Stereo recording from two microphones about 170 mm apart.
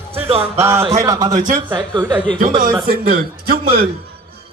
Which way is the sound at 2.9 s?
60° right (ahead or behind).